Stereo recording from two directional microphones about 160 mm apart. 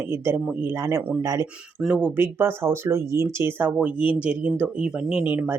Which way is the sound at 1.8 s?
5° right (ahead or behind).